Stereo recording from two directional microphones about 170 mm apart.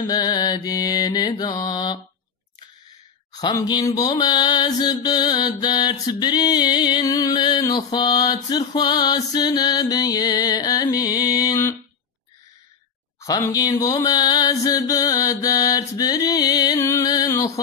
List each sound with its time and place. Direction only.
0.0 s music: 25° left (ahead or behind)
3.3 s music: 25° left (ahead or behind)
13.2 s a sound: 20° left (ahead or behind)